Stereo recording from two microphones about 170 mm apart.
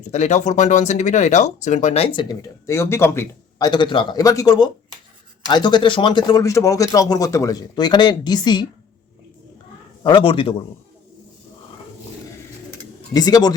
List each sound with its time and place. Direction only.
0.1 s speech: 45° left (ahead or behind)
2.6 s speech: 15° left (ahead or behind)
10.0 s speech: 25° left (ahead or behind)
13.1 s speech: 25° left (ahead or behind)